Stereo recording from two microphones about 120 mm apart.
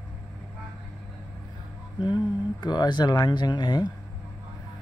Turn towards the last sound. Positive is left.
turn(degrees=40)  # may be behind; listen again after turning